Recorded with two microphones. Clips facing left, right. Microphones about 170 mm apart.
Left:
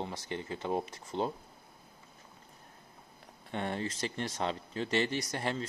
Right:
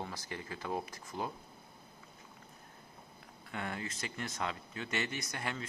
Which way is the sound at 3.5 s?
30° left (ahead or behind).